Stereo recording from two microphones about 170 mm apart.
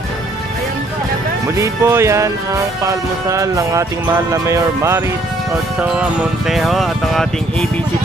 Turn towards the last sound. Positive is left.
turn(degrees=0)  # may be behind; listen again after turning